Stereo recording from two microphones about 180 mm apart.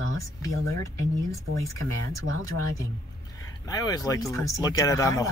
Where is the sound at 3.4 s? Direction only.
20° left (ahead or behind).